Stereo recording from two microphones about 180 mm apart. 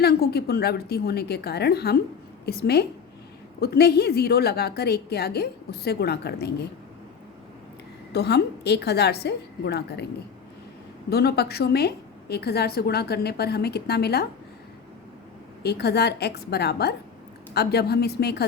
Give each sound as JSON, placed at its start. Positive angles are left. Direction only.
{"t": 0.0, "sound": "a woman's voice", "side_deg": 60}
{"t": 8.1, "sound": "a woman's voice", "side_deg": 65}
{"t": 11.1, "sound": "a woman's voice", "side_deg": 60}
{"t": 15.6, "sound": "a woman's voice", "side_deg": 65}